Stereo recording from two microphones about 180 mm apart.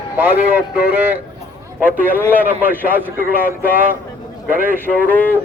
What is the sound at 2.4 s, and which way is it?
Speech, 10° right (ahead or behind).